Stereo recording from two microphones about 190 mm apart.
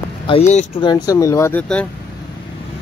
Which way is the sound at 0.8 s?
20° left (ahead or behind).